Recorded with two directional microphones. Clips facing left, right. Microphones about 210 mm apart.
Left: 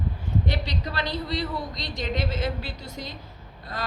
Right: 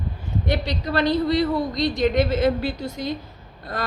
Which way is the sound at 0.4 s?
50° right (ahead or behind).